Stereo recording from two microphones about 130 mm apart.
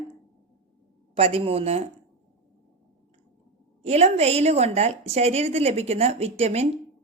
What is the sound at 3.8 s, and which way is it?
A woman's voice, 55° right (ahead or behind).